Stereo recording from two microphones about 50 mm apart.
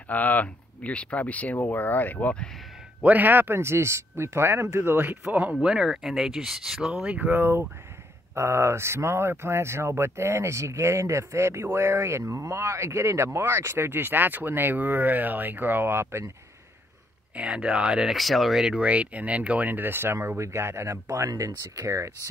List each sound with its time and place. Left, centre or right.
0.1 s speech: left
3.0 s speech: right
3.5 s speech: right
5.6 s speech: centre
7.1 s speech: right
7.3 s speech: right
8.4 s speech: right
17.4 s speech: centre
18.1 s speech: centre
18.8 s speech: right
19.7 s speech: right
20.3 s speech: right